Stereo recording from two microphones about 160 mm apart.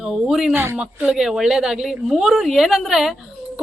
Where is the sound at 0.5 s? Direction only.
15° right (ahead or behind).